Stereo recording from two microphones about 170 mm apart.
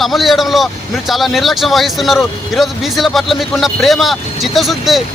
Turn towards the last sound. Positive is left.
turn(degrees=0)  # may be behind; listen again after turning